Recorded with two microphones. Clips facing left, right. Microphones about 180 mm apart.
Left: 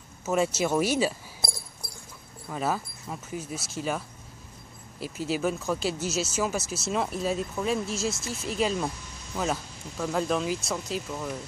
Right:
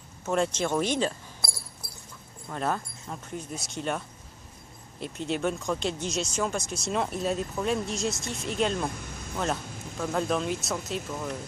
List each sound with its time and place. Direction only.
0.2 s speech: 5° left (ahead or behind)
1.4 s dog: 20° left (ahead or behind)
2.5 s speech: 5° left (ahead or behind)
5.0 s speech: 5° left (ahead or behind)